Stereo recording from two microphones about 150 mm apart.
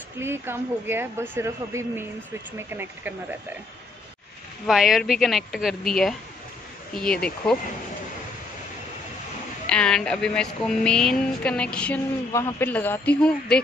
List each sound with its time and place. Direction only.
0.2 s a woman's voice: 15° right (ahead or behind)
4.6 s speech: centre (ahead or behind)
9.7 s speech: 5° left (ahead or behind)
12.3 s speech: 20° left (ahead or behind)